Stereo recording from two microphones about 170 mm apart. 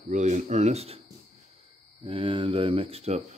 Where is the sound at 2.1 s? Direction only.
30° right (ahead or behind).